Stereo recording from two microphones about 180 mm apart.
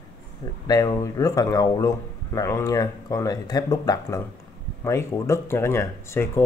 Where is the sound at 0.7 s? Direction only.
20° left (ahead or behind).